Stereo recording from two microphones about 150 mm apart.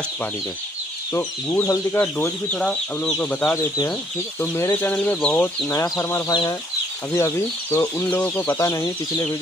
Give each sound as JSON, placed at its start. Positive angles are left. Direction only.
{"t": 1.1, "sound": "speech", "side_deg": 20}